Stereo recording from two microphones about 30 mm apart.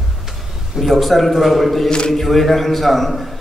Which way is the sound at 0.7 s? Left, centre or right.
Centre.